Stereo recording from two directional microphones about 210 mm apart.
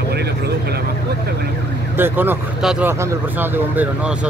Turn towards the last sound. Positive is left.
turn(degrees=-10)  # may be behind; listen again after turning